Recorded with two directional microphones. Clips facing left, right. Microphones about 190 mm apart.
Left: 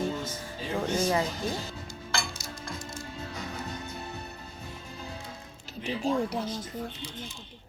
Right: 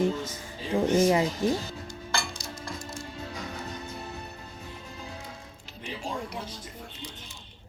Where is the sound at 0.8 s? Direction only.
15° right (ahead or behind).